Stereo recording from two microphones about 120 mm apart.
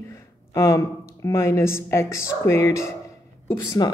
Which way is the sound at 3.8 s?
35° left (ahead or behind).